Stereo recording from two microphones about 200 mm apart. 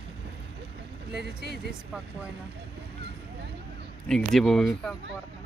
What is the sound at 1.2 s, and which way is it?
Speech, 55° right (ahead or behind).